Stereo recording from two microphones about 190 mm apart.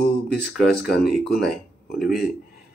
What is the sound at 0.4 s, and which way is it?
Speech, 60° left (ahead or behind).